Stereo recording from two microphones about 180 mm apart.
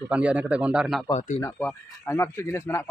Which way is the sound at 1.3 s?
10° left (ahead or behind).